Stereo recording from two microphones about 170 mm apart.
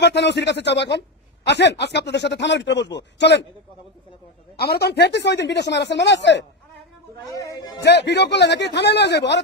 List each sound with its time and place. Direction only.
0.0 s speech: 80° left
4.6 s speech: 70° left (ahead or behind); by 6.4 s 90° left
7.2 s speech: 20° left (ahead or behind)
7.8 s a man's voice: 80° left